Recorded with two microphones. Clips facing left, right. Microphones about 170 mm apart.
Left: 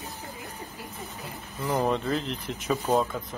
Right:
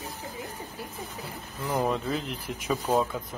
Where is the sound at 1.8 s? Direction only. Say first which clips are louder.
Left 1 dB; 10° right (ahead or behind).